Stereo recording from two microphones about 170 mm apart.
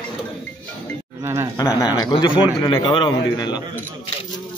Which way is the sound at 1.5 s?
20° left (ahead or behind).